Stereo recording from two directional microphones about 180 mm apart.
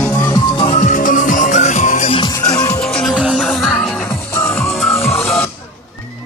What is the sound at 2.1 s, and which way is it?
Music, 20° left (ahead or behind).